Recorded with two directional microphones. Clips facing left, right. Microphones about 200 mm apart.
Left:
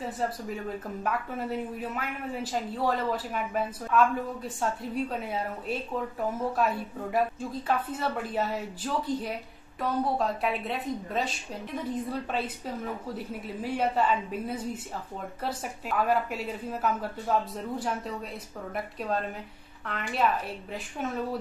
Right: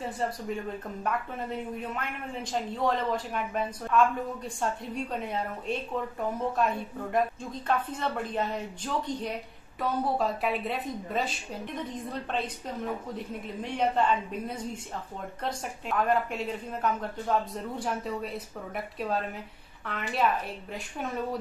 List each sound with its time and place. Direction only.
0.0 s speech: centre (ahead or behind)
1.8 s speech: 5° left (ahead or behind)